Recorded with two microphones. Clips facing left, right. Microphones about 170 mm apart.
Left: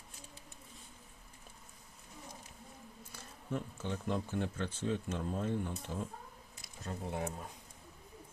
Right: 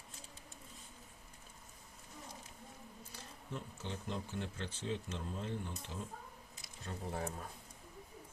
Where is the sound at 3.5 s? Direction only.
50° left (ahead or behind).